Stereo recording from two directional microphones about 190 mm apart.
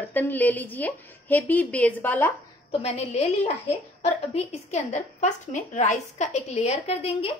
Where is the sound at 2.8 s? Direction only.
35° left (ahead or behind).